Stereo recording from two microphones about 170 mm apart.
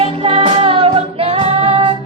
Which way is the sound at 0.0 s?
30° right (ahead or behind).